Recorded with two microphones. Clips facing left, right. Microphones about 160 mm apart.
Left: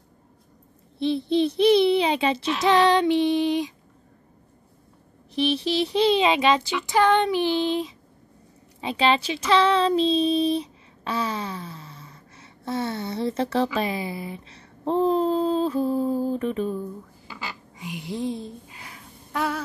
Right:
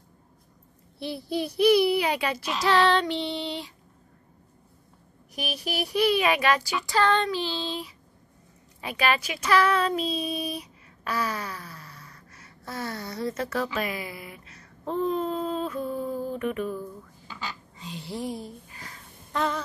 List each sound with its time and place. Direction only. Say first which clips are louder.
0.9 s speech: left 8 dB; 25° left (ahead or behind)
5.3 s speech: left 9 dB; 30° left (ahead or behind)
17.3 s a sound: left 1 dB; 10° left (ahead or behind)